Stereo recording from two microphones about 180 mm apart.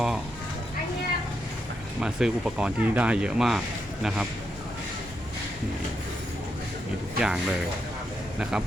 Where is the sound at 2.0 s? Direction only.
5° right (ahead or behind).